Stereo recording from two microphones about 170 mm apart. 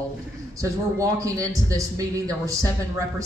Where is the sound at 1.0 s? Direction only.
20° right (ahead or behind).